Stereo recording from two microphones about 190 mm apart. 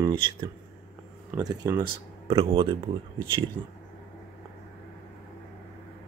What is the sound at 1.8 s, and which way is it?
Speech, 30° right (ahead or behind).